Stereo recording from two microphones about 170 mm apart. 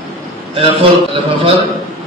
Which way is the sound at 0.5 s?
30° right (ahead or behind).